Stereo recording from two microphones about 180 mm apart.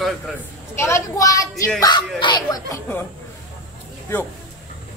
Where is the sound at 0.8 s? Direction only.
15° left (ahead or behind).